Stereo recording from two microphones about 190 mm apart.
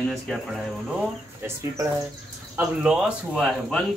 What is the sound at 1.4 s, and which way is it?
Speech, 15° right (ahead or behind).